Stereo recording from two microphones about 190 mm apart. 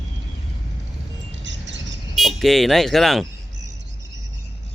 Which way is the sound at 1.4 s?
70° right (ahead or behind).